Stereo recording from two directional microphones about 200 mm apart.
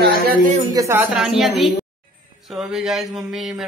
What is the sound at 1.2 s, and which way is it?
Speech, centre (ahead or behind).